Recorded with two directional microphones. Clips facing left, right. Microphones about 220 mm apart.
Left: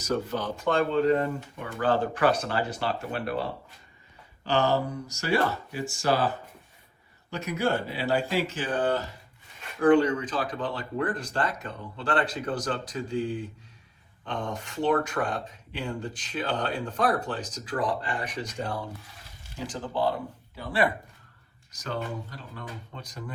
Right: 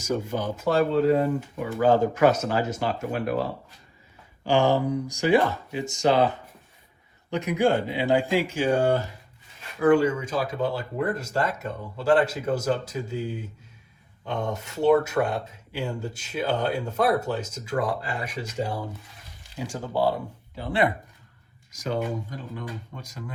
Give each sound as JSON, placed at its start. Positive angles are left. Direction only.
{"t": 0.0, "sound": "speech", "side_deg": -10}
{"t": 4.4, "sound": "speech", "side_deg": -15}
{"t": 21.9, "sound": "speech", "side_deg": -15}